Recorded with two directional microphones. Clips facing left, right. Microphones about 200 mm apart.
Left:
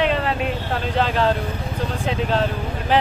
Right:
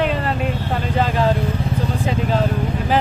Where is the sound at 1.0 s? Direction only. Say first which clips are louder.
Right 1 dB; 10° right (ahead or behind).